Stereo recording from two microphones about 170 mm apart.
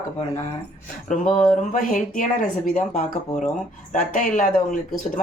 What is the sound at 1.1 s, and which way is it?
Speech, 50° left (ahead or behind).